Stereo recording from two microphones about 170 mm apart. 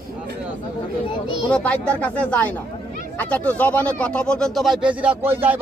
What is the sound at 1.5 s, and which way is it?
Speech, 5° left (ahead or behind).